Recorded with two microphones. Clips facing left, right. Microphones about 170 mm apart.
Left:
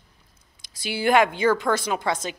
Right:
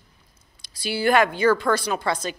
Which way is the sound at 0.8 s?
20° left (ahead or behind).